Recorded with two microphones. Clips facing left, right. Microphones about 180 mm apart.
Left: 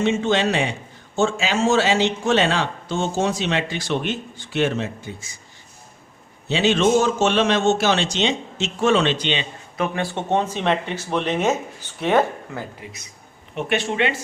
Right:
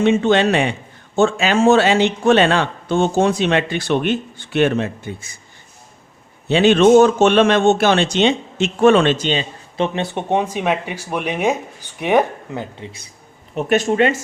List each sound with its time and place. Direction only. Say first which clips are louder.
0.0 s a man's voice: right 5 dB; 60° right (ahead or behind)
6.5 s a man's voice: right 7 dB; 55° right (ahead or behind); by 9.5 s 40° right (ahead or behind)
9.7 s speech: right 3 dB; 25° right (ahead or behind)
13.6 s speech: right 6 dB; 40° right (ahead or behind)